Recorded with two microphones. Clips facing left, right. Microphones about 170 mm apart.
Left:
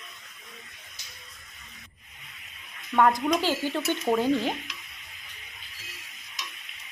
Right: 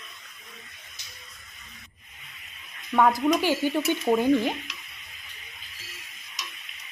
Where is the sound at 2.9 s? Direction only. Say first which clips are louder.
Right 1 dB; 5° right (ahead or behind).